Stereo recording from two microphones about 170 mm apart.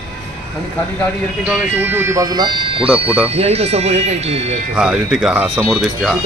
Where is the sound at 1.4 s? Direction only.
10° right (ahead or behind); by 4.5 s 40° right (ahead or behind).